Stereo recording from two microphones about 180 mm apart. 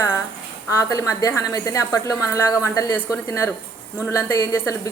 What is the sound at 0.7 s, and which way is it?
A woman's voice, 15° left (ahead or behind).